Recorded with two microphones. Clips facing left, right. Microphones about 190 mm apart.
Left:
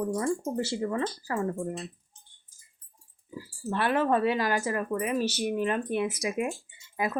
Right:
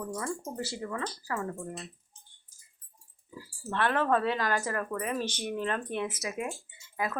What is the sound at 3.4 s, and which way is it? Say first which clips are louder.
Speech: left 1 dB; 10° left (ahead or behind).